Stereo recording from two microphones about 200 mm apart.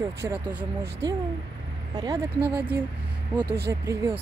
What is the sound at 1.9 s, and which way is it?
Speech, 20° right (ahead or behind).